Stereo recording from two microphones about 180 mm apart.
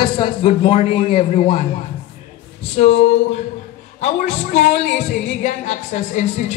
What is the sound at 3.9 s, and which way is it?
A woman's voice, 40° left (ahead or behind).